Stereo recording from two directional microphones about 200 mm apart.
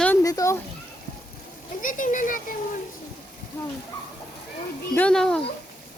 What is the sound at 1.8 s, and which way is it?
Speech, 40° left (ahead or behind).